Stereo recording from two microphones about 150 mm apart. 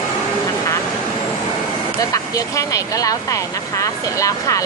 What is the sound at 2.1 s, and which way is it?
Speech, 20° left (ahead or behind).